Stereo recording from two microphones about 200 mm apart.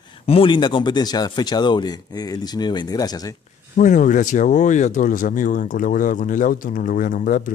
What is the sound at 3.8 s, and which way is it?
Speech, 40° left (ahead or behind).